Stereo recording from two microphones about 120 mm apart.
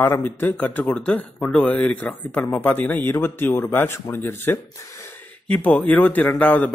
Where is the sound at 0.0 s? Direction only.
15° left (ahead or behind).